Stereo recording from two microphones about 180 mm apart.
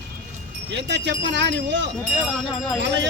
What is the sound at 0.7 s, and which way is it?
Speech, 75° right (ahead or behind).